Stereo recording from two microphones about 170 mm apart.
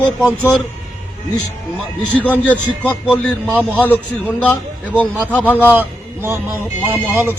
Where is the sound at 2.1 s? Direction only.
10° left (ahead or behind).